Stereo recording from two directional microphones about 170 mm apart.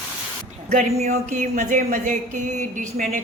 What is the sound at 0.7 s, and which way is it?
Speech, 45° right (ahead or behind).